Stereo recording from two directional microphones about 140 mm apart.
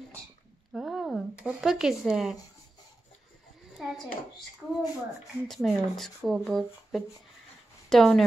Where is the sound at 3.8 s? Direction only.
5° right (ahead or behind).